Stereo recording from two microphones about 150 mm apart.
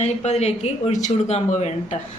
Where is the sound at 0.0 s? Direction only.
45° left (ahead or behind).